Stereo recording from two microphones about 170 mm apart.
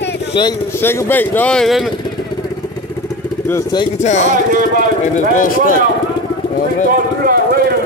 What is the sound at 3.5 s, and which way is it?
Speech, 25° left (ahead or behind).